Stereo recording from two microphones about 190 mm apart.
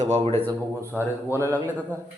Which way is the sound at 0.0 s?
35° right (ahead or behind).